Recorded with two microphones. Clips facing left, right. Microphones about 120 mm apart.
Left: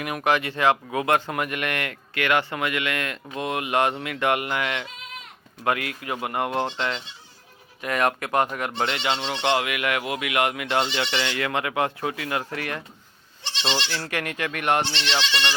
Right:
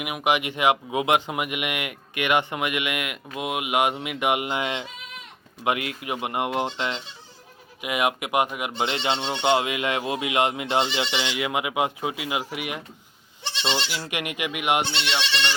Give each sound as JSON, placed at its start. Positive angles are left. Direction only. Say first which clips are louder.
{"t": 0.0, "sound": "speech", "louder": "left 1 dB", "side_deg": -10}
{"t": 9.0, "sound": "speech", "louder": "right 1 dB", "side_deg": -25}
{"t": 13.9, "sound": "speech", "louder": "left 1 dB", "side_deg": -15}